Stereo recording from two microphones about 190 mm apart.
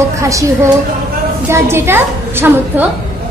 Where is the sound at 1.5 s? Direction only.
15° right (ahead or behind).